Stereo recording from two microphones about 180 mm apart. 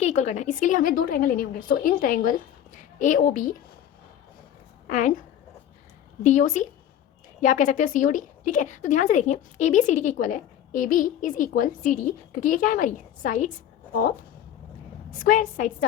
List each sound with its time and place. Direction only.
0.0 s a woman's voice: 40° left (ahead or behind)
4.9 s a woman's voice: 45° left (ahead or behind)
6.2 s a woman's voice: 45° left (ahead or behind)
15.1 s a woman's voice: 50° left (ahead or behind)